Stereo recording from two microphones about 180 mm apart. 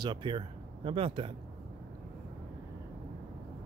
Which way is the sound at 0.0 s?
25° right (ahead or behind).